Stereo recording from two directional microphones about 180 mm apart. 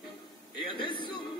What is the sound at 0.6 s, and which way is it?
Music, 25° left (ahead or behind).